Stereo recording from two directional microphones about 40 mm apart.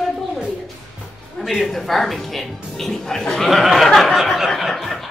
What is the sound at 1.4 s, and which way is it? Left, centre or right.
Speech, centre.